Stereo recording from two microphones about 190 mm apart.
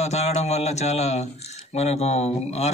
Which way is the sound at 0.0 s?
35° left (ahead or behind).